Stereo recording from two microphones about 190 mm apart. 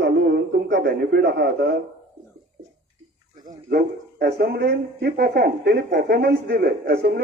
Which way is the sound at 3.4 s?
55° right (ahead or behind).